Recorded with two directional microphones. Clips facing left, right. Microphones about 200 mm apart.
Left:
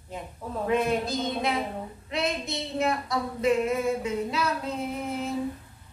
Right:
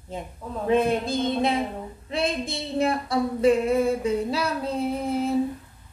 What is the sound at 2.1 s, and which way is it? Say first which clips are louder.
Female singing: right 3 dB; 30° right (ahead or behind).